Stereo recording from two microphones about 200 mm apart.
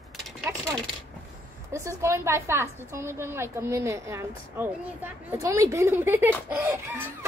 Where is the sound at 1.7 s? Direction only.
15° right (ahead or behind).